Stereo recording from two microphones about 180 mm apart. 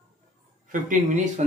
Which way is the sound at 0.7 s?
45° right (ahead or behind).